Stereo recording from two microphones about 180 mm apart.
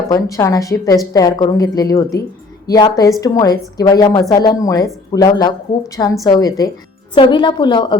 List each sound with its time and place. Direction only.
0.1 s a woman's voice: 20° left (ahead or behind)